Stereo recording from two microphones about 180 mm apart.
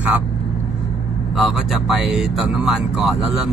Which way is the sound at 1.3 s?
Centre (ahead or behind).